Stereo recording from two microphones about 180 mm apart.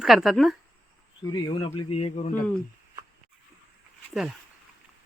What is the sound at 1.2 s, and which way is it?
Speech, 25° left (ahead or behind).